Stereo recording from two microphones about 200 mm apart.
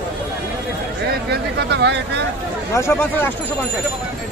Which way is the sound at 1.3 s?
60° right (ahead or behind).